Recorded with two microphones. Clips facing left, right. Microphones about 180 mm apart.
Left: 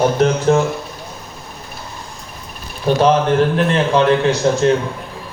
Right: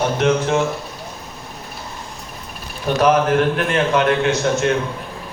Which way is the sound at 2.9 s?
30° left (ahead or behind).